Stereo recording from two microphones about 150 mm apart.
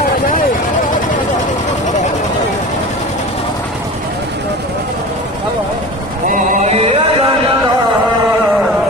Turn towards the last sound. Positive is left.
turn(degrees=-40)  # may be behind; listen again after turning